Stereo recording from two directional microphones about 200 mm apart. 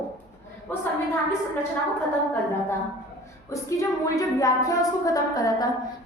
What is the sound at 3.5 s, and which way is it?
A woman's voice, 15° left (ahead or behind).